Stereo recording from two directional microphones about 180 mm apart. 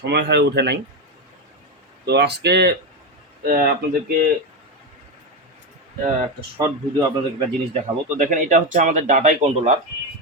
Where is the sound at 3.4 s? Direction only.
55° right (ahead or behind).